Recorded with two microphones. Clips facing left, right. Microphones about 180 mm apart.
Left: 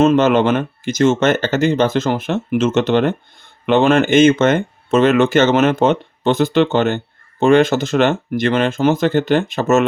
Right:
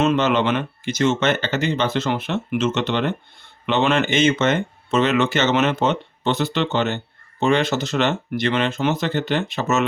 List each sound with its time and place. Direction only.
0.0 s speech: 45° left (ahead or behind)